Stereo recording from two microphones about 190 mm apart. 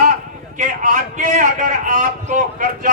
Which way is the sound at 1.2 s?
45° right (ahead or behind).